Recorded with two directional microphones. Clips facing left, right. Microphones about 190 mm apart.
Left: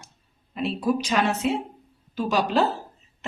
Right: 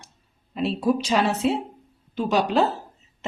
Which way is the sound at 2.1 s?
20° right (ahead or behind).